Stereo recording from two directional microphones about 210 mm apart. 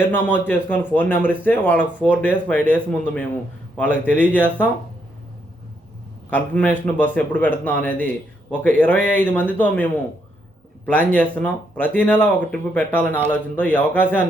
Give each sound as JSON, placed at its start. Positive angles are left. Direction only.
{"t": 0.3, "sound": "a man's voice", "side_deg": 10}
{"t": 6.3, "sound": "a man's voice", "side_deg": 5}